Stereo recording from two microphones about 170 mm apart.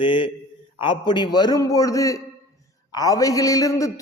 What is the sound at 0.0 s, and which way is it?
A man's voice, 30° left (ahead or behind).